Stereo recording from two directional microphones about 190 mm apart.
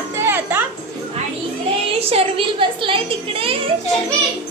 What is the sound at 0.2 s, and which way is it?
Music, 10° right (ahead or behind).